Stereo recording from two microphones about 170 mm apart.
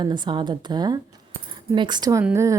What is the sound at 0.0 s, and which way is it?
Speech, 25° right (ahead or behind).